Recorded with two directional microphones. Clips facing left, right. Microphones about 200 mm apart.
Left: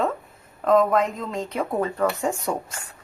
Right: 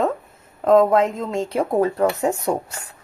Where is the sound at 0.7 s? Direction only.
25° right (ahead or behind).